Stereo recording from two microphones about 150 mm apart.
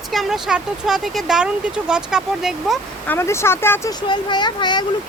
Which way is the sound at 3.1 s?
15° left (ahead or behind).